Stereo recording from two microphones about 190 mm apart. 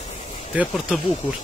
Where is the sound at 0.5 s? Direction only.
Centre (ahead or behind).